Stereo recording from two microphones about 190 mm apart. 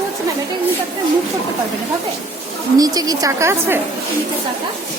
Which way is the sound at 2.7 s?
20° right (ahead or behind).